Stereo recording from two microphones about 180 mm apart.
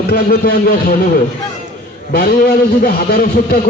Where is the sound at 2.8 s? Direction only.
55° left (ahead or behind).